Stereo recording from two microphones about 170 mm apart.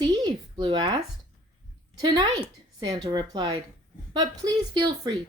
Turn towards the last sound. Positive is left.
turn(degrees=-25)  # may be behind; listen again after turning